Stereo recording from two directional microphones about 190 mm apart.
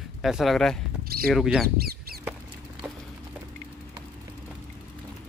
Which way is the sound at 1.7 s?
50° right (ahead or behind).